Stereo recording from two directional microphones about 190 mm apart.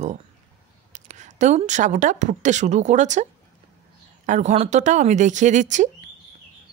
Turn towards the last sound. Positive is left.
turn(degrees=-40)  # may be behind; listen again after turning